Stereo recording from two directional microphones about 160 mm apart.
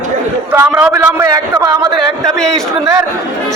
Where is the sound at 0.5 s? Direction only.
15° right (ahead or behind).